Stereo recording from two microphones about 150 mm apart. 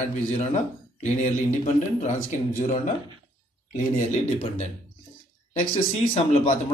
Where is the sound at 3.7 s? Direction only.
55° left (ahead or behind).